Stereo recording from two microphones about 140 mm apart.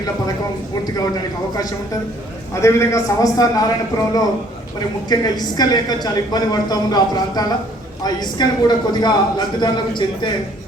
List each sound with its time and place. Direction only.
2.6 s a woman's voice: 20° left (ahead or behind)